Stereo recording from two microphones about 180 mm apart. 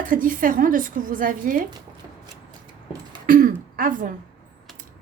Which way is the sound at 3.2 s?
50° right (ahead or behind).